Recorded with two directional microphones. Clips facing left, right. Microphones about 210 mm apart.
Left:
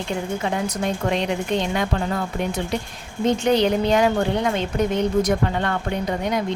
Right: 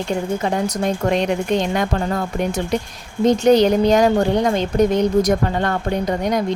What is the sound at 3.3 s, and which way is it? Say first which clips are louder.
A woman's voice: right 5 dB; 40° right (ahead or behind).